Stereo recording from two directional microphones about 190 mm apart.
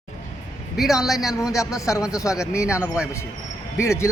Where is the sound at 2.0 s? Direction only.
15° left (ahead or behind).